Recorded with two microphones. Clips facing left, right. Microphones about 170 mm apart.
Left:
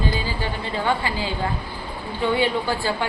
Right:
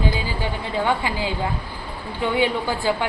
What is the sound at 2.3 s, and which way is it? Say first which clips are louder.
Speech: right 1 dB; 15° right (ahead or behind).